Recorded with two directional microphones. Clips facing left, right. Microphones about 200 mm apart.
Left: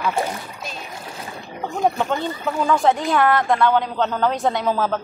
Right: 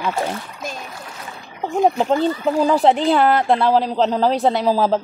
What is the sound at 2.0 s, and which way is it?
Speech, 35° right (ahead or behind).